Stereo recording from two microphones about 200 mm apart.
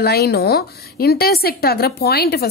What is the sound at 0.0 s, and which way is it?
A woman's voice, 55° left (ahead or behind).